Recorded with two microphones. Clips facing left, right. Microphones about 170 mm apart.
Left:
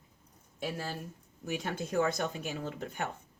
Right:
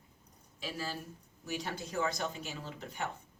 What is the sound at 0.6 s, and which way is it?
Speech, 55° left (ahead or behind).